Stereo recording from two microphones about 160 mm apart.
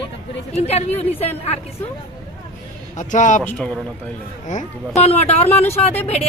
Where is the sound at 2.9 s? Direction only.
50° left (ahead or behind).